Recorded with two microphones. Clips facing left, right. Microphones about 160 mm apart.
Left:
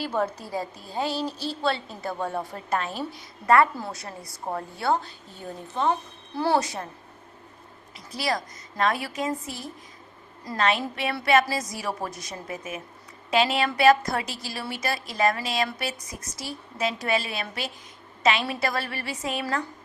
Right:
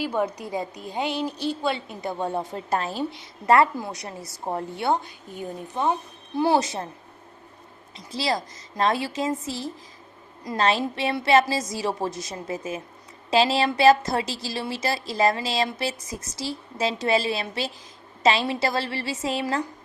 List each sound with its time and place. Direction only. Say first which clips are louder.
0.0 s a woman's voice: right 2 dB; 15° right (ahead or behind)
3.8 s speech: right 2 dB; 15° right (ahead or behind)
8.1 s a woman's voice: right 2 dB; 25° right (ahead or behind)